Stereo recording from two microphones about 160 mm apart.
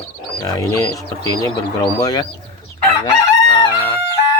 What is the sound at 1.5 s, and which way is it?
Speech, 25° left (ahead or behind).